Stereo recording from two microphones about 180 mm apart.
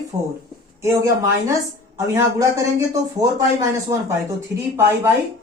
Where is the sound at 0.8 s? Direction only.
15° right (ahead or behind).